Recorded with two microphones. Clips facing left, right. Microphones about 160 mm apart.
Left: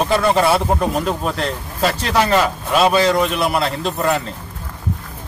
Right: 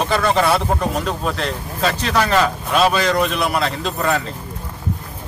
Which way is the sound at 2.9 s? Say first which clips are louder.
Left 3 dB; 25° left (ahead or behind).